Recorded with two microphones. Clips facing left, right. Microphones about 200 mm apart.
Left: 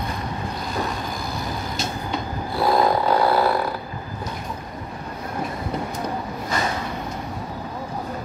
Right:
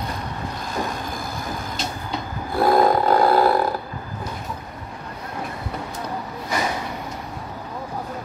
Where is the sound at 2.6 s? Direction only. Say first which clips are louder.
Right 2 dB; 50° right (ahead or behind).